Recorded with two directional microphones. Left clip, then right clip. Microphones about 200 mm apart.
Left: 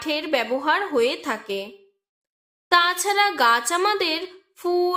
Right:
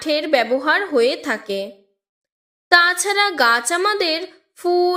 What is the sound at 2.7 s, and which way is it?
A woman's voice, 15° right (ahead or behind).